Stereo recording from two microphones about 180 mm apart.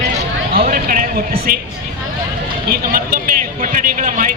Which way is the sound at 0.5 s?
50° right (ahead or behind).